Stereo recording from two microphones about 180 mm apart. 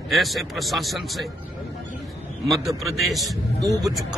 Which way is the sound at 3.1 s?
Centre (ahead or behind).